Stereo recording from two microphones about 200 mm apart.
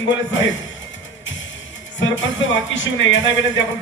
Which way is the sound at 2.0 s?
70° left (ahead or behind).